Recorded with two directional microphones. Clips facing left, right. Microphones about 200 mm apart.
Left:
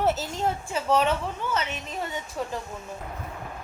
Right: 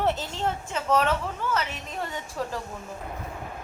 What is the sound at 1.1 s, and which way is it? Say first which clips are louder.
Speech: even; 30° left (ahead or behind).